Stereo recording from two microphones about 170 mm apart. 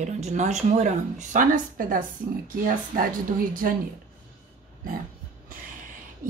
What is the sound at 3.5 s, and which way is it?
Speech, 55° right (ahead or behind).